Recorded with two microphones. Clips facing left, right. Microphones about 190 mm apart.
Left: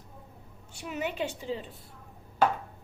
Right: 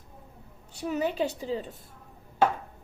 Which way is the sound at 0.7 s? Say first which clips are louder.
Right 5 dB; 35° right (ahead or behind).